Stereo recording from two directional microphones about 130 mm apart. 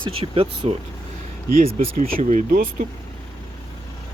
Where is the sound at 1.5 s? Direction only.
90° right.